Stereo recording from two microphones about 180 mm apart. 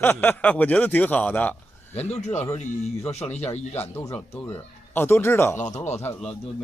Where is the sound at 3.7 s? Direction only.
10° left (ahead or behind).